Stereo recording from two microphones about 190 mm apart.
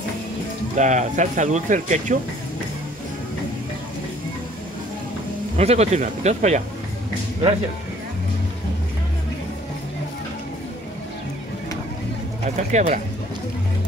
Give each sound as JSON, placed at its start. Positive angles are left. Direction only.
{"t": 0.7, "sound": "speech", "side_deg": -40}
{"t": 5.6, "sound": "speech", "side_deg": -35}
{"t": 12.4, "sound": "speech", "side_deg": -40}